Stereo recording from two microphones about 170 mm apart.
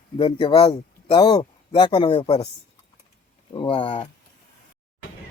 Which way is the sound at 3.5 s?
30° left (ahead or behind).